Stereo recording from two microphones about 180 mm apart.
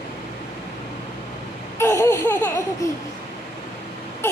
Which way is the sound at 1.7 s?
15° left (ahead or behind).